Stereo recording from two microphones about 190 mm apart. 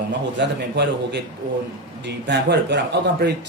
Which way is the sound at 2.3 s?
65° right (ahead or behind).